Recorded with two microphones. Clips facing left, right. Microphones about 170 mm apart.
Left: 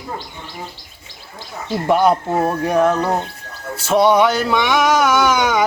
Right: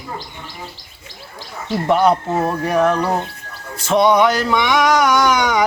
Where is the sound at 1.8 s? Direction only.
10° left (ahead or behind).